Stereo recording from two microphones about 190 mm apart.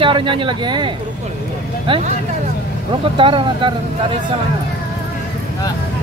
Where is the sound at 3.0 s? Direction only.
25° right (ahead or behind).